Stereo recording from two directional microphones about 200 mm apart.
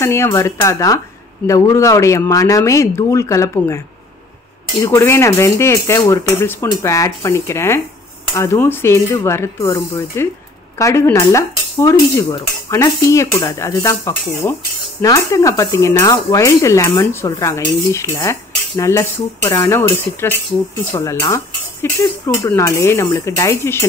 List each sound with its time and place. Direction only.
0.0 s speech: 15° left (ahead or behind)
4.8 s speech: 15° left (ahead or behind)